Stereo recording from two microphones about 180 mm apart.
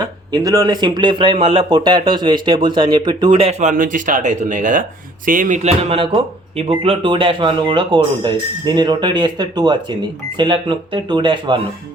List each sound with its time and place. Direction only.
0.3 s speech: 20° right (ahead or behind)